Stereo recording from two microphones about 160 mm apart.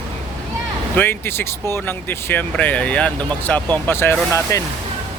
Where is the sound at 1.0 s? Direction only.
15° left (ahead or behind).